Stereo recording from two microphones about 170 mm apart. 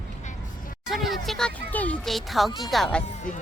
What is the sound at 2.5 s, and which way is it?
Speech, 25° left (ahead or behind).